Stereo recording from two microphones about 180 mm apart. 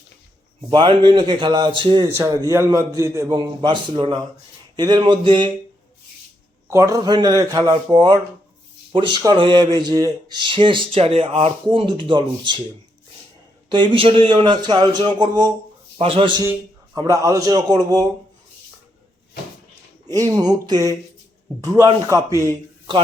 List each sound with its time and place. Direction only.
0.7 s speech: 25° right (ahead or behind)
2.1 s a man's voice: 15° right (ahead or behind)
6.7 s speech: 15° right (ahead or behind)
13.7 s a man's voice: 30° right (ahead or behind)
20.1 s a man's voice: 20° right (ahead or behind)